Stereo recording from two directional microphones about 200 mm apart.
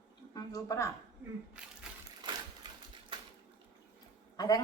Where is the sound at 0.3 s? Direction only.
15° left (ahead or behind).